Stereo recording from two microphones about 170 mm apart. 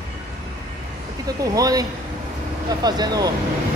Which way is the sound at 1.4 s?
20° right (ahead or behind).